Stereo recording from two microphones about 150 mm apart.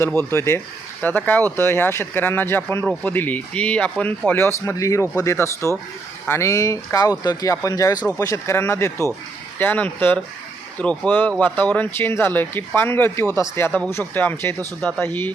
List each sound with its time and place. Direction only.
0.0 s speech: 10° left (ahead or behind)